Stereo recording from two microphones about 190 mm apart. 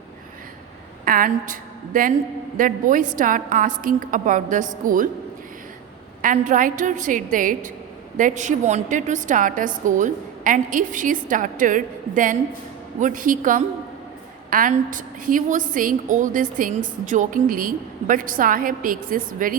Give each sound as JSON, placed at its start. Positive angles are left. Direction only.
{"t": 1.0, "sound": "a woman's voice", "side_deg": -50}
{"t": 6.2, "sound": "a woman's voice", "side_deg": -40}